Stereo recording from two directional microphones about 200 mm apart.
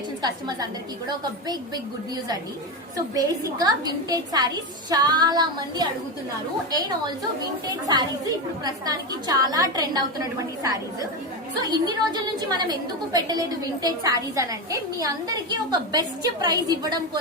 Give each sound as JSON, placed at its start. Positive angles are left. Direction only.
{"t": 0.2, "sound": "a woman's voice", "side_deg": -20}
{"t": 3.2, "sound": "a woman's voice", "side_deg": -20}
{"t": 8.6, "sound": "a woman's voice", "side_deg": -20}